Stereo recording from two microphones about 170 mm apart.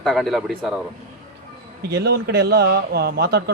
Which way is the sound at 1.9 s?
80° right.